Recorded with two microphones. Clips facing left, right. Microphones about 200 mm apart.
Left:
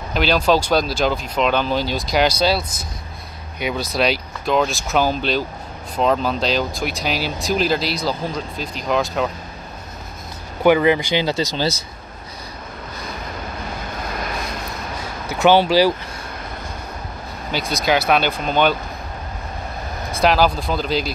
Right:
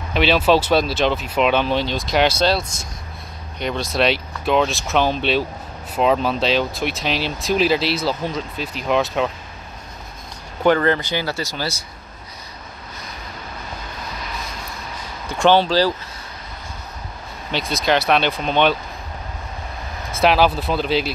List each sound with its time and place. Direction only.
0.1 s speech: centre (ahead or behind)
10.6 s speech: 10° left (ahead or behind)
15.2 s speech: 5° left (ahead or behind)
17.5 s speech: centre (ahead or behind)
20.1 s speech: centre (ahead or behind)